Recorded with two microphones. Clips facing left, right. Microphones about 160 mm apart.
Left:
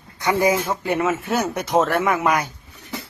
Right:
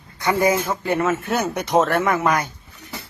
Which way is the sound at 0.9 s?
5° left (ahead or behind).